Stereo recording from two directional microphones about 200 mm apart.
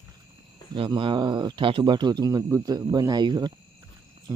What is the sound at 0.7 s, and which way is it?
Speech, 25° right (ahead or behind).